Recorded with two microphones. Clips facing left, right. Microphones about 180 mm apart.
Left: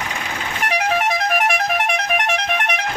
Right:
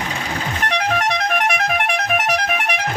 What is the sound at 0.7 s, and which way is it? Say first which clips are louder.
Vehicle horn: left 1 dB; 5° left (ahead or behind).